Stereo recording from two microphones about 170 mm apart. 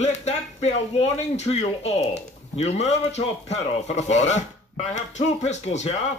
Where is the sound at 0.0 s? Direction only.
40° left (ahead or behind).